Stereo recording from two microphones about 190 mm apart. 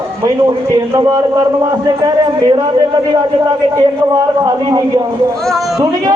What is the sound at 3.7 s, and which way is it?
A man's voice, 15° right (ahead or behind).